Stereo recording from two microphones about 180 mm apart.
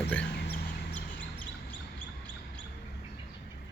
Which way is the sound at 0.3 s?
65° left (ahead or behind).